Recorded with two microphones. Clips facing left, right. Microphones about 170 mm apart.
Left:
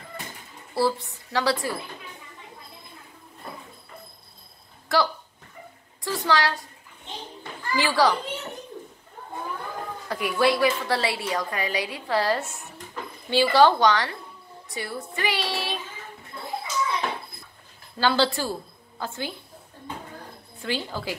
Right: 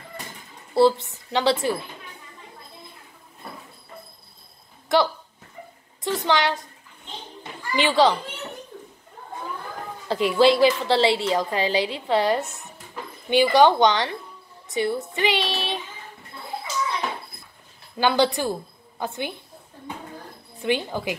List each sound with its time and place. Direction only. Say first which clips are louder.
0.7 s a woman's voice: right 6 dB; 20° right (ahead or behind)
4.9 s a woman's voice: right 3 dB; 20° right (ahead or behind)
7.7 s a woman's voice: right 3 dB; 20° right (ahead or behind)
10.0 s a woman's voice: right 5 dB; 25° right (ahead or behind)
12.4 s speech: left 1 dB; centre (ahead or behind)
13.3 s a woman's voice: right 2 dB; 20° right (ahead or behind)
17.9 s a woman's voice: right 2 dB; 15° right (ahead or behind)
20.6 s a woman's voice: right 5 dB; 20° right (ahead or behind)